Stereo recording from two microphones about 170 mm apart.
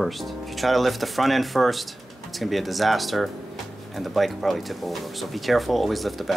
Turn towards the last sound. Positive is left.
turn(degrees=0)  # may be behind; listen again after turning